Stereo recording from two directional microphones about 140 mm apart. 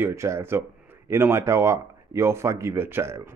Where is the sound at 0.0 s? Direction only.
20° right (ahead or behind).